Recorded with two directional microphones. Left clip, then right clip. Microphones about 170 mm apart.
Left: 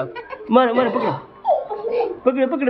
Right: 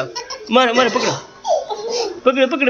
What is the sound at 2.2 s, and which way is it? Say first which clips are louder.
Speech: right 7 dB; centre (ahead or behind).